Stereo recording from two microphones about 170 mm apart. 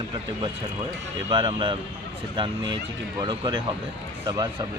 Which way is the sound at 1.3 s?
30° right (ahead or behind).